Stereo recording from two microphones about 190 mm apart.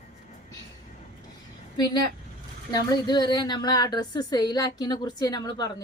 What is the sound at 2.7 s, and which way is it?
Speech, 20° left (ahead or behind).